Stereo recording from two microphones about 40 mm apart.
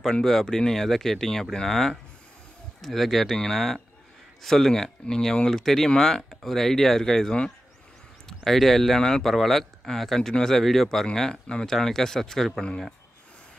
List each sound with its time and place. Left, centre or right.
0.2 s speech: centre
11.4 s speech: centre